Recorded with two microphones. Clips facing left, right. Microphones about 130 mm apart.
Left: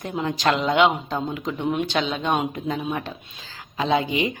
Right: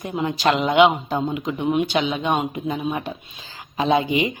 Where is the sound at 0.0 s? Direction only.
5° right (ahead or behind).